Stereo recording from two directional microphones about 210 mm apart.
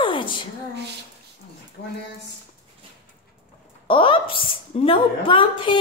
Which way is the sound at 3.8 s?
25° left (ahead or behind).